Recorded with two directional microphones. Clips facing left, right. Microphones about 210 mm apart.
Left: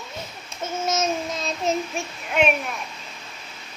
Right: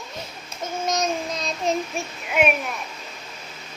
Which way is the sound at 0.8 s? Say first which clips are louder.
Even; 5° left (ahead or behind).